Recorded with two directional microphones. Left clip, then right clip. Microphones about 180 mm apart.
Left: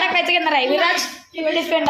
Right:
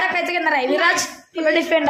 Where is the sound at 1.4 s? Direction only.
30° right (ahead or behind).